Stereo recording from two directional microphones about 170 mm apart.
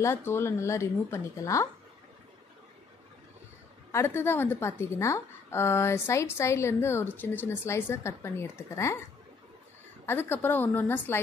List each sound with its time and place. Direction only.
0.0 s a woman's voice: 15° left (ahead or behind)
3.9 s a woman's voice: 15° left (ahead or behind)
10.0 s a woman's voice: 10° left (ahead or behind)